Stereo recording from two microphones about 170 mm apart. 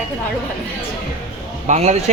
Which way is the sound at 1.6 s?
40° right (ahead or behind).